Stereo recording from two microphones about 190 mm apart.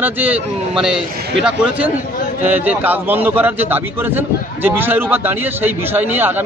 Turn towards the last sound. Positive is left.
turn(degrees=-10)  # may be behind; listen again after turning